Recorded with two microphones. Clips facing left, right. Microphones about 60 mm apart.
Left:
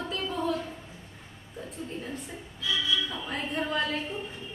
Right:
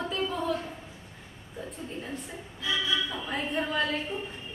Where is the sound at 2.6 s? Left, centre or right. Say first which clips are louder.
Even; right.